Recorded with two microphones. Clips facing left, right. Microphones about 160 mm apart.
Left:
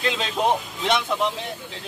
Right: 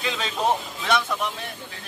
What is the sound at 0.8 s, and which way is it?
Speech, 20° left (ahead or behind).